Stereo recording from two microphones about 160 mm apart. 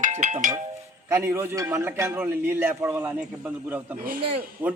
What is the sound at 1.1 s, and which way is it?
A man's voice, 15° right (ahead or behind).